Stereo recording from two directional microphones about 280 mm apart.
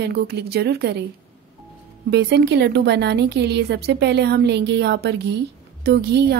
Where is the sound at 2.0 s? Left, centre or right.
Right.